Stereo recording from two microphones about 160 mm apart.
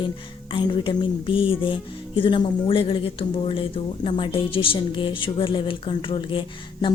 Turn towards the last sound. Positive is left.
turn(degrees=30)  # may be behind; listen again after turning